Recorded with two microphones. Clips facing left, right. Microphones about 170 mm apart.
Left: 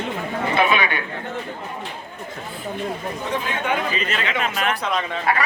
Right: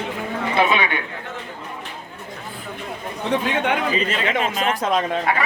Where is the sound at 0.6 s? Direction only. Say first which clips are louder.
Right 1 dB; 25° right (ahead or behind).